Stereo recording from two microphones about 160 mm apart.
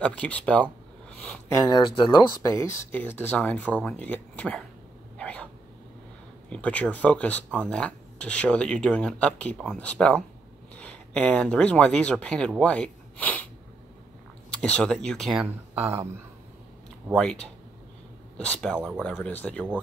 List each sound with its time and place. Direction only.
0.0 s speech: 10° left (ahead or behind)
1.2 s a sound: 5° left (ahead or behind)
1.6 s speech: 30° left (ahead or behind)
2.5 s speech: 15° left (ahead or behind)
5.1 s a sound: 5° left (ahead or behind)
6.5 s speech: 10° left (ahead or behind)
14.5 s speech: 5° left (ahead or behind)
15.4 s speech: 15° right (ahead or behind)
17.1 s speech: 5° left (ahead or behind)